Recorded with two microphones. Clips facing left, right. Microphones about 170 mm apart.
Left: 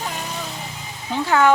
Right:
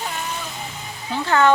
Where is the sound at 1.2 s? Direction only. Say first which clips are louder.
Even; 10° left (ahead or behind).